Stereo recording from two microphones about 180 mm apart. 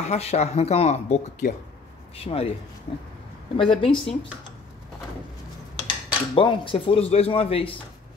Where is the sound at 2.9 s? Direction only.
45° left (ahead or behind).